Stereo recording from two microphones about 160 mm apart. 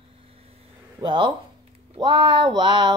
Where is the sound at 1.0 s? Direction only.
30° right (ahead or behind).